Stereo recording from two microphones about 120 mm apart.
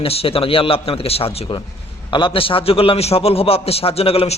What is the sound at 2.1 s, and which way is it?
A man's voice, 45° left (ahead or behind).